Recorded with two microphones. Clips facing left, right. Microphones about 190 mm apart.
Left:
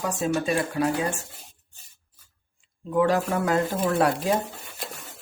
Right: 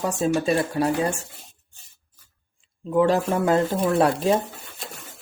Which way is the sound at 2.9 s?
25° right (ahead or behind).